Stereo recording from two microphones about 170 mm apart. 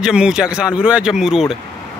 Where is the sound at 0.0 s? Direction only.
5° right (ahead or behind).